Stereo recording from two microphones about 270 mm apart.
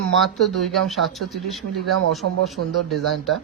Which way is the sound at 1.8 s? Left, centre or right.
Right.